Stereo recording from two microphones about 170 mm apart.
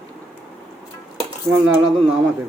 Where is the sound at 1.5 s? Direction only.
15° right (ahead or behind).